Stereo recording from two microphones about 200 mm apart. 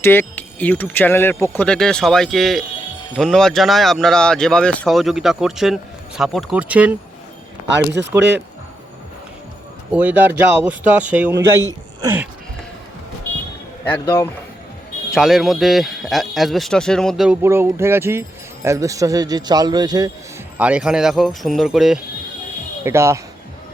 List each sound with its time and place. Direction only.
0.0 s speech: 10° left (ahead or behind); by 6.9 s 5° right (ahead or behind)
9.9 s speech: 10° right (ahead or behind)
14.0 s speech: 15° left (ahead or behind)
15.1 s speech: centre (ahead or behind)
17.4 s speech: 10° right (ahead or behind)
20.6 s speech: 5° right (ahead or behind)
22.8 s speech: 15° right (ahead or behind)